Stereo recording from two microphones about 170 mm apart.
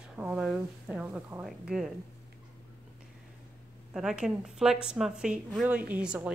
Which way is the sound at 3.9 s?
5° right (ahead or behind).